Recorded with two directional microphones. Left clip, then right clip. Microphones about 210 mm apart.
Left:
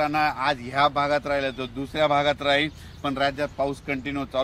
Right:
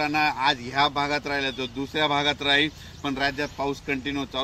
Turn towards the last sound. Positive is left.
turn(degrees=20)  # may be behind; listen again after turning